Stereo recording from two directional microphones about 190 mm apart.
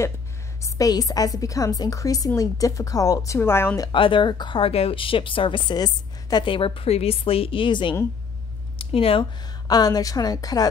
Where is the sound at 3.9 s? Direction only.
25° left (ahead or behind).